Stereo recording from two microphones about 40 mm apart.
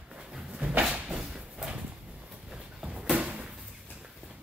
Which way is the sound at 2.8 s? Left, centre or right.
Right.